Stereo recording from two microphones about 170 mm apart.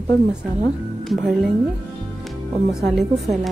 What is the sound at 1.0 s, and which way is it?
Speech, centre (ahead or behind).